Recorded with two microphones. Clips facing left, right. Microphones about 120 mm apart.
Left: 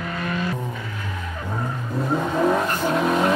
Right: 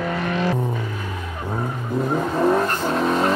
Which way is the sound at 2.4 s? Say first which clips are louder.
Right 2 dB; centre (ahead or behind).